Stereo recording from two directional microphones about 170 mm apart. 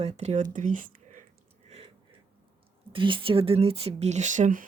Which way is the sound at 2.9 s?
30° right (ahead or behind).